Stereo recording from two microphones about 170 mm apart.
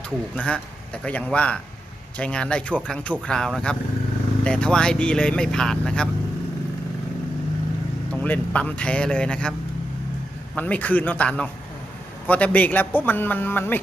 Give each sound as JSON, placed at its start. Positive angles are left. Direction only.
{"t": 0.3, "sound": "a man's voice", "side_deg": 5}
{"t": 8.1, "sound": "a man's voice", "side_deg": 10}